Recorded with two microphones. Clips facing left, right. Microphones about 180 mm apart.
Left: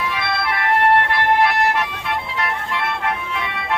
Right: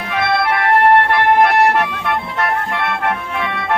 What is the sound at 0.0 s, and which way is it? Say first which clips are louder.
Music: right 6 dB; 50° right (ahead or behind).